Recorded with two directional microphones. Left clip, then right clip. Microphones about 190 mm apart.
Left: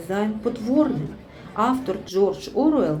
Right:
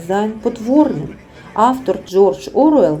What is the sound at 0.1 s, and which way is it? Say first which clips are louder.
Speech: right 7 dB; 20° right (ahead or behind).